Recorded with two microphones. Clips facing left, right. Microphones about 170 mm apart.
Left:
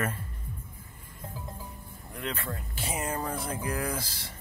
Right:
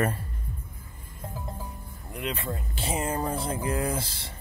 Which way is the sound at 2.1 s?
20° right (ahead or behind).